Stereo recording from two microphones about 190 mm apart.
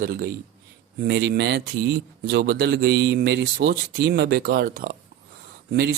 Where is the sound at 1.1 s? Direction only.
60° right (ahead or behind).